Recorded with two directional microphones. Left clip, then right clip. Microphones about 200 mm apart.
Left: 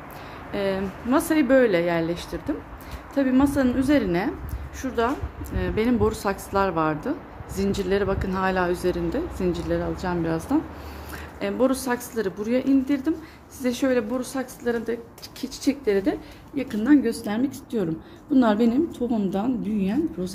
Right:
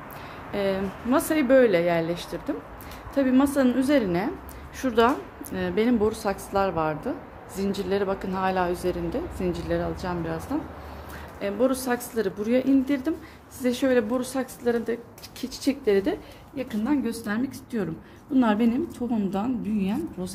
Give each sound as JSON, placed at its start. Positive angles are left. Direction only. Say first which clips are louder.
{"t": 0.5, "sound": "a woman's voice", "louder": "even", "side_deg": 0}
{"t": 4.8, "sound": "speech", "louder": "right 4 dB", "side_deg": -30}
{"t": 5.5, "sound": "speech", "louder": "even", "side_deg": -20}
{"t": 5.9, "sound": "a woman's voice", "louder": "left 1 dB", "side_deg": 10}
{"t": 10.0, "sound": "a woman's voice", "louder": "left 4 dB", "side_deg": 30}
{"t": 11.7, "sound": "a woman's voice", "louder": "left 1 dB", "side_deg": 5}